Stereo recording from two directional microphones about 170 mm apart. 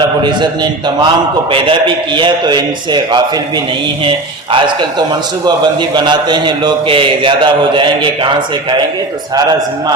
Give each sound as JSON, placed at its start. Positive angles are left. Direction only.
{"t": 0.3, "sound": "a man's voice", "side_deg": -25}
{"t": 2.1, "sound": "a man's voice", "side_deg": -25}
{"t": 4.5, "sound": "a man's voice", "side_deg": -25}